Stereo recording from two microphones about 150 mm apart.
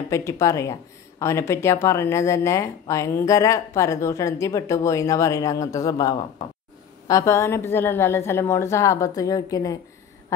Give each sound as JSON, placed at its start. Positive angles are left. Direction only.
{"t": 0.1, "sound": "a woman's voice", "side_deg": 20}